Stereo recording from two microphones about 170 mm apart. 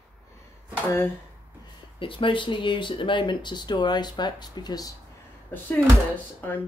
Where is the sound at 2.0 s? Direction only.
30° left (ahead or behind).